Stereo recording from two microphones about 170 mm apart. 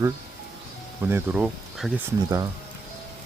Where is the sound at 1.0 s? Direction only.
10° right (ahead or behind).